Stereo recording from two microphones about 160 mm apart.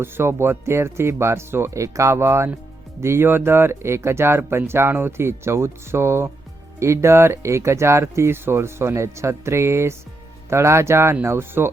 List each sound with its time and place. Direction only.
0.0 s speech: 15° right (ahead or behind)